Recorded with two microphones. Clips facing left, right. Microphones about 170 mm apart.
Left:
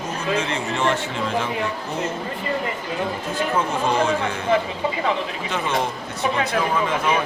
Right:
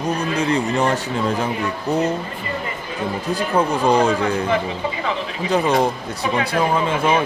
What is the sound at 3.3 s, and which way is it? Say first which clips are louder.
Speech: right 4 dB; 35° right (ahead or behind).